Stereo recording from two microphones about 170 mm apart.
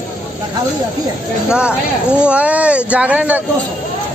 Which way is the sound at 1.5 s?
5° right (ahead or behind).